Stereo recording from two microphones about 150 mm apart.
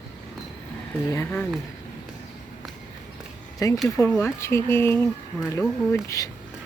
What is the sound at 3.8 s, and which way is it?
Speech, 20° left (ahead or behind).